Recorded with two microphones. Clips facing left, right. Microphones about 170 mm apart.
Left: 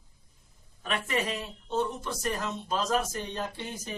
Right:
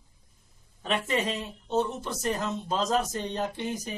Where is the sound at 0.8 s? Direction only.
25° right (ahead or behind).